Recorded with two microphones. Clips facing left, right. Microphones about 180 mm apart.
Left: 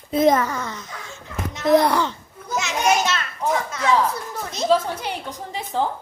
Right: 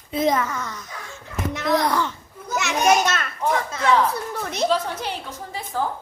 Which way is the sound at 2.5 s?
60° right (ahead or behind).